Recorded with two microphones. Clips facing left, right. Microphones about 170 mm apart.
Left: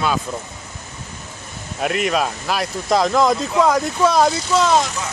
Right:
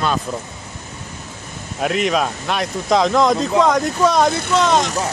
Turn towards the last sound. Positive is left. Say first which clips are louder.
# even
turn(degrees=5)  # may be behind; listen again after turning